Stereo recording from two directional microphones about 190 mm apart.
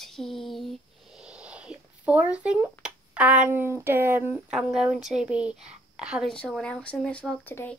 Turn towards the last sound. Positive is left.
turn(degrees=10)  # may be behind; listen again after turning